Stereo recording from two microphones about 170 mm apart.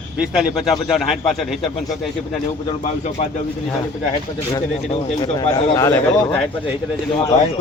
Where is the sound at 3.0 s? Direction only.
40° left (ahead or behind).